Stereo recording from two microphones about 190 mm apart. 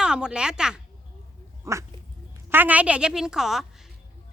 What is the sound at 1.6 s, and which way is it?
Dog, 15° right (ahead or behind).